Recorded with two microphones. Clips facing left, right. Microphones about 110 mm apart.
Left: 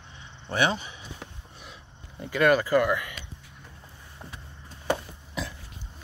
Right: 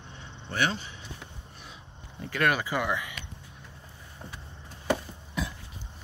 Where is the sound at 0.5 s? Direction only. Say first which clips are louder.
Left 4 dB; 15° left (ahead or behind).